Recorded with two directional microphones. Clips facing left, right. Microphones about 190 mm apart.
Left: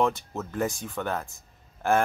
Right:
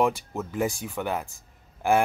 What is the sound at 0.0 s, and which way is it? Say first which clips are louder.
Speech: right 1 dB; 10° right (ahead or behind).